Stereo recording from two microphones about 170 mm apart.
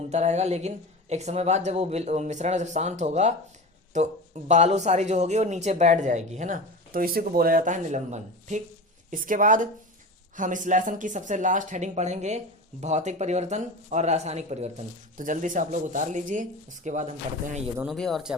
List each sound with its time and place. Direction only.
0.1 s speech: 40° right (ahead or behind)
17.8 s speech: centre (ahead or behind)